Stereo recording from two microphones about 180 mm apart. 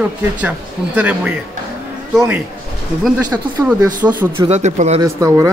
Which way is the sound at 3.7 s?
10° right (ahead or behind).